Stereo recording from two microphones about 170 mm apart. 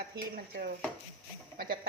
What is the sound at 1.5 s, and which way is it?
Speech, 60° right (ahead or behind).